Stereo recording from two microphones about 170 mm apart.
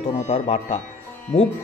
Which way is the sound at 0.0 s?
40° left (ahead or behind).